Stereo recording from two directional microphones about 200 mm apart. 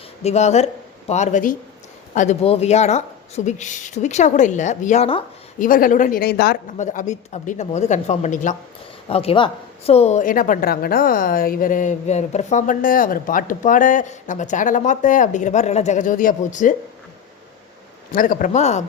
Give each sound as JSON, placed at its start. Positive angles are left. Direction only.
{"t": 0.2, "sound": "a woman's voice", "side_deg": 35}
{"t": 5.5, "sound": "speech", "side_deg": 45}
{"t": 6.7, "sound": "a woman's voice", "side_deg": 40}
{"t": 18.1, "sound": "a woman's voice", "side_deg": 45}